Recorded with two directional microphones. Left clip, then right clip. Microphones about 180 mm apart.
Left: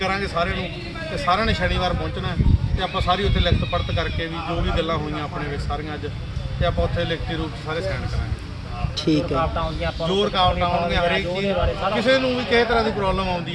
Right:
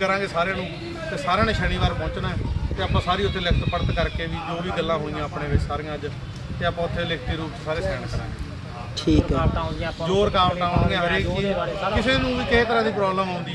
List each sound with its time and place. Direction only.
0.0 s speech: centre (ahead or behind)
6.6 s speech: 5° right (ahead or behind)
9.0 s speech: centre (ahead or behind)
9.3 s speech: 15° left (ahead or behind)
10.1 s speech: 5° right (ahead or behind)